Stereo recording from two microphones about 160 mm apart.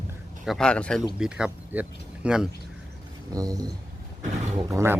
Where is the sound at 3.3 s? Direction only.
20° right (ahead or behind).